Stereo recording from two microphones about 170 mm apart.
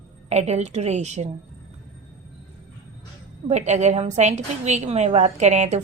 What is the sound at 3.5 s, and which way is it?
A woman's voice, 45° right (ahead or behind).